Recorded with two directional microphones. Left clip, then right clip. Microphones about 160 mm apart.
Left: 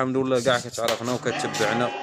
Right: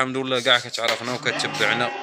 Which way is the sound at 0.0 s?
40° left (ahead or behind).